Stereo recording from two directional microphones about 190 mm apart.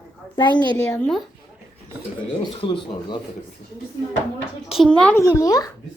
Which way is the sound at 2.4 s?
25° left (ahead or behind).